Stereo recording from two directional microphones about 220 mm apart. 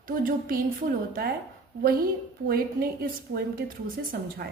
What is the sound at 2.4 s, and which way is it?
A woman's voice, 45° right (ahead or behind).